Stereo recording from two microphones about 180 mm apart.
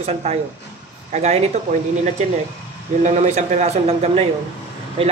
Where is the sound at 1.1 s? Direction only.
40° right (ahead or behind).